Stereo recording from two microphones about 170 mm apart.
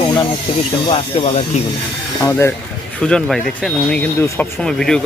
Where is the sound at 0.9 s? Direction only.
35° left (ahead or behind).